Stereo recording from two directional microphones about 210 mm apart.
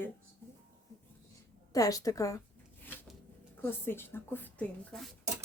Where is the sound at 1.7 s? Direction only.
15° left (ahead or behind).